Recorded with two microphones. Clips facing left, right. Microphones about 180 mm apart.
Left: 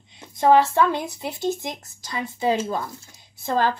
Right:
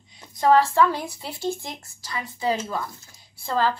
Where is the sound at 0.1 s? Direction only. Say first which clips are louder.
Left 2 dB; 25° left (ahead or behind).